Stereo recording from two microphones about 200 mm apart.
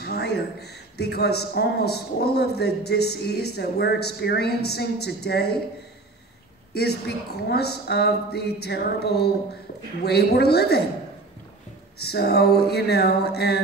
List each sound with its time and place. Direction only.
0.0 s speech: 55° left (ahead or behind)
6.7 s speech: 55° left (ahead or behind)
12.0 s speech: 55° left (ahead or behind)